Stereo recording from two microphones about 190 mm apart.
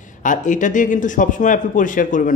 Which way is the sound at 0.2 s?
40° left (ahead or behind).